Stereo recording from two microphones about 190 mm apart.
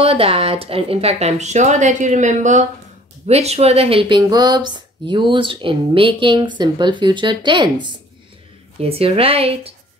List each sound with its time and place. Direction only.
0.0 s speech: 30° right (ahead or behind)